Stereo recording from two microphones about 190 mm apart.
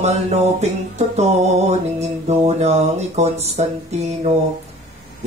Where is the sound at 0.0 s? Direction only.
35° right (ahead or behind).